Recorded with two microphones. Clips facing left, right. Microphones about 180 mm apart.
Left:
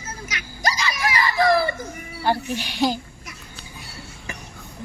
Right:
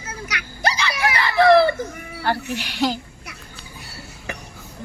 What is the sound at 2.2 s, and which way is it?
Speech, 15° left (ahead or behind).